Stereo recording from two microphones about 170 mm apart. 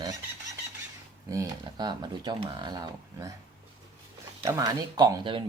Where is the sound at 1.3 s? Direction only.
20° right (ahead or behind).